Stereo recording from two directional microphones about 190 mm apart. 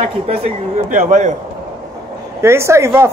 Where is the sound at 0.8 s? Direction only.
40° right (ahead or behind).